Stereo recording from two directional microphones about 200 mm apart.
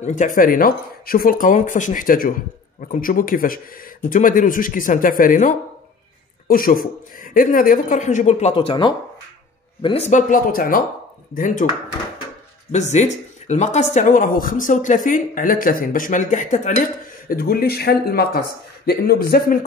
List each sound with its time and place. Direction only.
0.0 s speech: 40° left (ahead or behind)
12.7 s speech: 35° left (ahead or behind)